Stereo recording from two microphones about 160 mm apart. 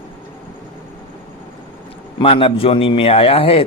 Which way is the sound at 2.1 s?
35° left (ahead or behind).